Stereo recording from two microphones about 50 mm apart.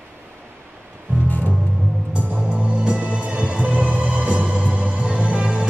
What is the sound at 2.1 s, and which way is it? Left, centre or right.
Music, right.